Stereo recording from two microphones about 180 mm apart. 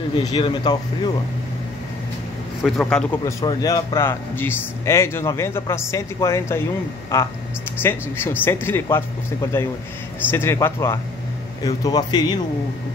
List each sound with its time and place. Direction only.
0.2 s speech: 25° left (ahead or behind)
2.6 s a man's voice: 5° left (ahead or behind)
3.3 s speech: 20° left (ahead or behind)